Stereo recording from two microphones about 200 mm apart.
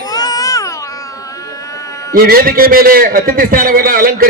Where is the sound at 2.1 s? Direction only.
45° right (ahead or behind).